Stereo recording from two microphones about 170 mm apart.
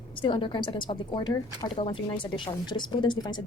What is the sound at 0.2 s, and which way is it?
Speech, 30° left (ahead or behind).